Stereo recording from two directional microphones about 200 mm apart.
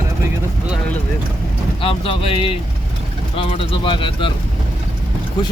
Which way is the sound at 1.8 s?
25° left (ahead or behind).